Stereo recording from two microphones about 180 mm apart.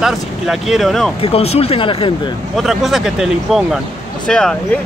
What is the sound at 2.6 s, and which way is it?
Speech, centre (ahead or behind).